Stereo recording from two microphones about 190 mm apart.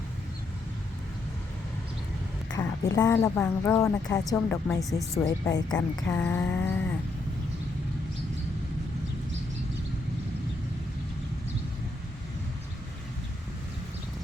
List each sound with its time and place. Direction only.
2.5 s speech: 20° left (ahead or behind); by 5.0 s centre (ahead or behind)
5.1 s speech: 20° left (ahead or behind)
6.0 s speech: 10° left (ahead or behind)